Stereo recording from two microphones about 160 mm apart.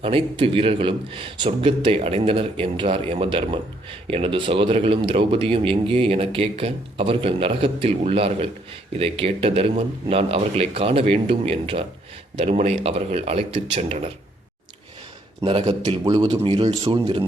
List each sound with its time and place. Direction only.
0.0 s a man's voice: 35° right (ahead or behind)
15.4 s a man's voice: 35° right (ahead or behind)